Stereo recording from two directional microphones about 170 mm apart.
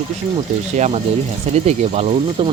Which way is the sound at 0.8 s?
40° right (ahead or behind).